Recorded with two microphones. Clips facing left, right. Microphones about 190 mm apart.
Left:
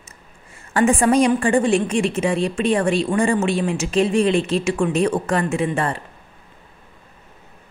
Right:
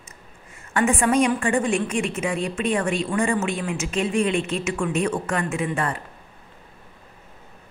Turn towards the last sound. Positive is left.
turn(degrees=30)  # may be behind; listen again after turning